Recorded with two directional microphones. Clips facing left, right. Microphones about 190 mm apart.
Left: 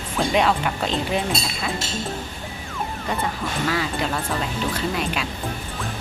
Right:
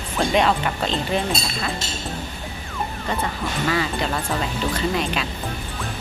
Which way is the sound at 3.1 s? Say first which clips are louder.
Even; 5° left (ahead or behind).